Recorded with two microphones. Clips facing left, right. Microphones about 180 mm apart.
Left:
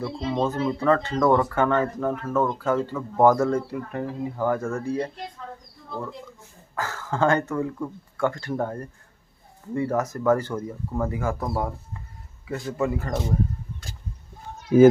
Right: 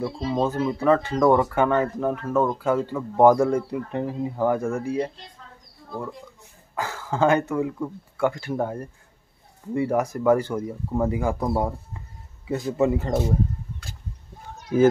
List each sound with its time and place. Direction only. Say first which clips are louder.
0.0 s speech: right 1 dB; 10° right (ahead or behind)
6.7 s speech: right 1 dB; 15° right (ahead or behind)